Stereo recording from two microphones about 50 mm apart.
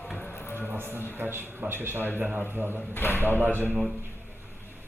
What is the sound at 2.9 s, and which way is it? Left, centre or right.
Speech, left.